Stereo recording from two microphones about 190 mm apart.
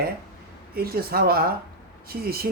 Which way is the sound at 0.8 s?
55° right (ahead or behind).